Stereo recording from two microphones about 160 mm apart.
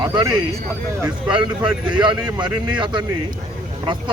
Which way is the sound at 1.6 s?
5° right (ahead or behind).